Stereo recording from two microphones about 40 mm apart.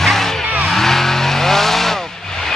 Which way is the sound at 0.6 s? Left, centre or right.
Centre.